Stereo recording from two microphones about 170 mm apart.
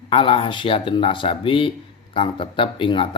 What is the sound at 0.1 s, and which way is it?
A man's voice, 35° left (ahead or behind).